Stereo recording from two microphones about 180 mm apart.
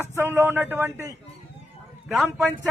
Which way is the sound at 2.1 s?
Centre (ahead or behind).